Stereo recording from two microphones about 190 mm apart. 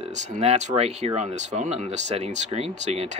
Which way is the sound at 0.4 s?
35° right (ahead or behind).